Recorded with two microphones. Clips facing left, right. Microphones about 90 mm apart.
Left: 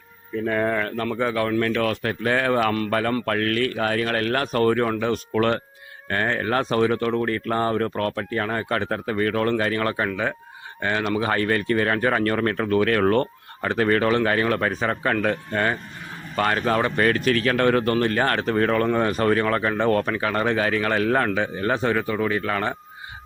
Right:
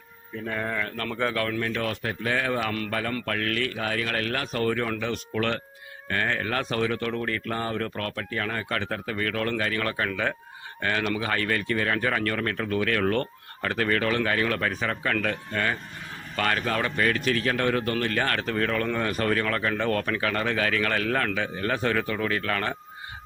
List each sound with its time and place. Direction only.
0.4 s speech: 60° left (ahead or behind)
1.0 s speech: 10° left (ahead or behind)
1.6 s speech: 90° left
2.2 s speech: 50° left (ahead or behind)
10.1 s speech: 10° left (ahead or behind)
10.8 s speech: 25° left (ahead or behind); by 13.2 s 40° left (ahead or behind)
13.6 s speech: 25° left (ahead or behind)
17.0 s speech: 45° left (ahead or behind)
17.3 s speech: 70° left (ahead or behind); by 17.9 s 50° left (ahead or behind)
17.9 s speech: 30° left (ahead or behind); by 22.7 s 15° left (ahead or behind)